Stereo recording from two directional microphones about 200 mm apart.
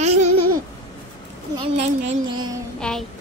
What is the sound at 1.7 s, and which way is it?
Speech, 35° right (ahead or behind).